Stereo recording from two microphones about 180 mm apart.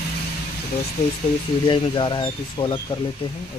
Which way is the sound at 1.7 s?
25° left (ahead or behind).